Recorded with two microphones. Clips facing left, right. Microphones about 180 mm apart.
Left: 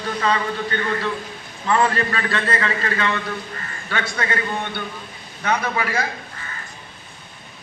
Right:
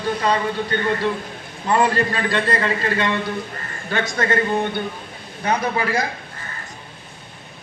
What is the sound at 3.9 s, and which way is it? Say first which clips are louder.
A man's voice: right 4 dB; 40° right (ahead or behind).